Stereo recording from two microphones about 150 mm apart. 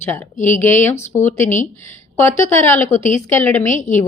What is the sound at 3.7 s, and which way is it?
Speech, 55° left (ahead or behind).